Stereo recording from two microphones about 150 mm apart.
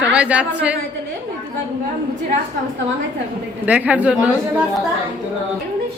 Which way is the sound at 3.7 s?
10° right (ahead or behind).